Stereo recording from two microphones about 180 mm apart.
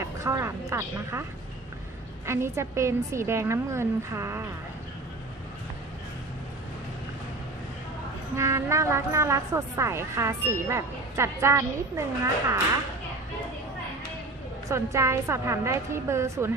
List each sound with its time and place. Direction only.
0.0 s speech: 15° right (ahead or behind)
2.2 s speech: 15° right (ahead or behind)
8.4 s speech: 15° right (ahead or behind)
14.7 s speech: 15° right (ahead or behind)